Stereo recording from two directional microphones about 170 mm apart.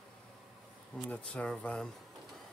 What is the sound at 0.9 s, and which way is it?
Speech, 5° left (ahead or behind).